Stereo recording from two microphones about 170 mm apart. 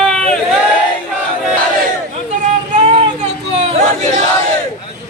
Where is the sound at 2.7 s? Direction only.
40° right (ahead or behind).